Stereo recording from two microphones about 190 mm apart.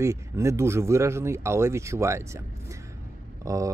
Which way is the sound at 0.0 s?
15° right (ahead or behind).